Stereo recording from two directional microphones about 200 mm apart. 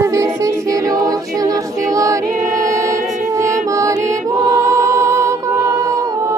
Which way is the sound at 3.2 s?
15° right (ahead or behind).